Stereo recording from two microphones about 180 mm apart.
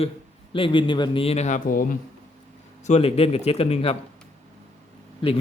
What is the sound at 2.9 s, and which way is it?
Speech, 35° left (ahead or behind).